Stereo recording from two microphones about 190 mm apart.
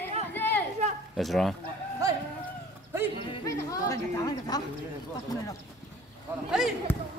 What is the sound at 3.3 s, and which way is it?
Speech, 15° left (ahead or behind).